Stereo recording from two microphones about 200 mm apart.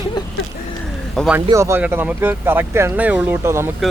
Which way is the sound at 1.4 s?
15° right (ahead or behind).